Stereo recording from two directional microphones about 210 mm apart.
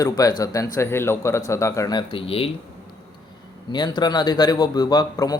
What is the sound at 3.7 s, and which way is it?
A man's voice, 20° left (ahead or behind).